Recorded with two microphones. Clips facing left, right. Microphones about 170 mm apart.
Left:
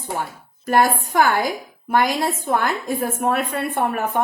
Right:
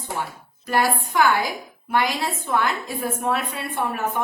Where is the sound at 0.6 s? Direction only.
50° left (ahead or behind).